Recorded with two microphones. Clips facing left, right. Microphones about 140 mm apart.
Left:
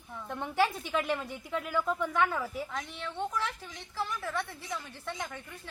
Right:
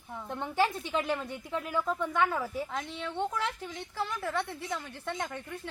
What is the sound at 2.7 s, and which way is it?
A woman's voice, 20° right (ahead or behind).